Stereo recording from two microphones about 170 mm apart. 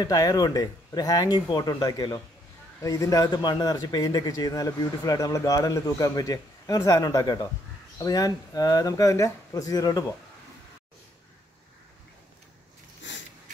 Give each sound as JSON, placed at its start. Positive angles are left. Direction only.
{"t": 0.0, "sound": "speech", "side_deg": 20}
{"t": 13.0, "sound": "wheeze", "side_deg": 90}